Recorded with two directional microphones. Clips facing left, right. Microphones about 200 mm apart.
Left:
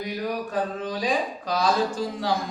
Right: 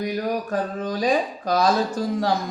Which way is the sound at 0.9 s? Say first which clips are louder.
Right 4 dB; 45° right (ahead or behind).